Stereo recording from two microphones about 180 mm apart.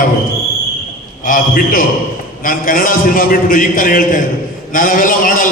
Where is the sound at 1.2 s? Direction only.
50° left (ahead or behind).